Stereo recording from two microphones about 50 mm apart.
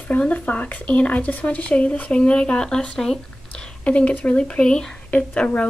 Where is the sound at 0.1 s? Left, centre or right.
Left.